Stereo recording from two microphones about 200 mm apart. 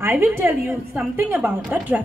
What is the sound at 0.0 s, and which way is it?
A woman's voice, 10° right (ahead or behind).